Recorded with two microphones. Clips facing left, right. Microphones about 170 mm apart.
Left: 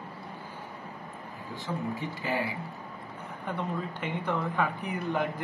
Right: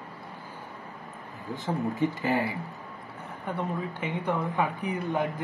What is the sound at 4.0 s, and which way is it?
Speech, 15° right (ahead or behind).